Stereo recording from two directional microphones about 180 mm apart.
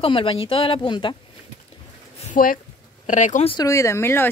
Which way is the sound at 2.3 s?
50° left (ahead or behind).